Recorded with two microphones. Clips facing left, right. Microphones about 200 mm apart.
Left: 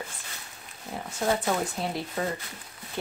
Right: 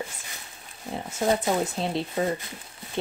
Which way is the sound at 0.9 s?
20° right (ahead or behind).